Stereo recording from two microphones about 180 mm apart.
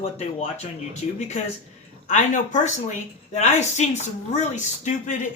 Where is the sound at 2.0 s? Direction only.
45° left (ahead or behind).